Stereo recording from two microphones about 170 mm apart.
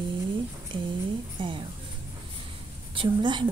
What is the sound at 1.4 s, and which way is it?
Speech, 30° right (ahead or behind).